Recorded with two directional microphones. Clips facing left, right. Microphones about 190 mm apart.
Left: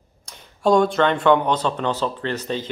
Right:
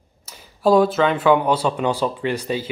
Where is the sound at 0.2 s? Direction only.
5° right (ahead or behind).